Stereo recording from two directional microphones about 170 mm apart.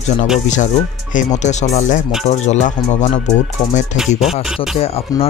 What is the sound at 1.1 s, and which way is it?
Speech, 45° left (ahead or behind).